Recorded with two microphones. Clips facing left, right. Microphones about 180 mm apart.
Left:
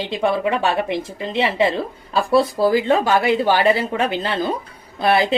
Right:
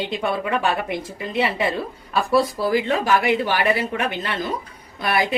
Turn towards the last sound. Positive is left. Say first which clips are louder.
# left 5 dB
turn(degrees=25)  # may be behind; listen again after turning